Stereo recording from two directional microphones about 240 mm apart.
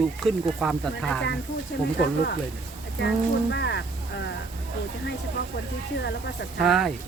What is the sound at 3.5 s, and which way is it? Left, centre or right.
Speech, left.